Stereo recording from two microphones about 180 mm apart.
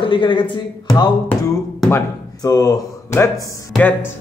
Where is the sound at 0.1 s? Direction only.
25° left (ahead or behind).